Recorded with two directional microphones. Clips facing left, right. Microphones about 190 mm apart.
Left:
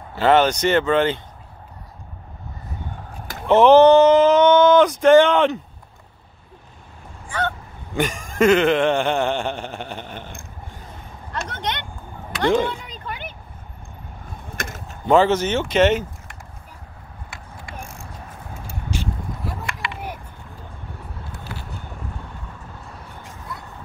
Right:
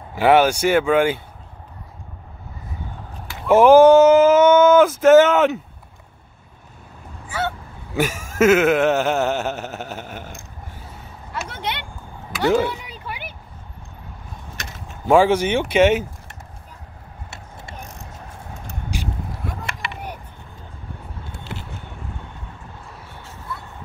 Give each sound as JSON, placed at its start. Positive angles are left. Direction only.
{"t": 0.1, "sound": "speech", "side_deg": -10}
{"t": 3.4, "sound": "speech", "side_deg": -10}
{"t": 7.2, "sound": "honk", "side_deg": -10}
{"t": 11.3, "sound": "a sound", "side_deg": -5}
{"t": 14.5, "sound": "a sound", "side_deg": 50}
{"t": 15.0, "sound": "speech", "side_deg": -10}
{"t": 17.7, "sound": "vehicle", "side_deg": 10}
{"t": 21.3, "sound": "vehicle", "side_deg": -25}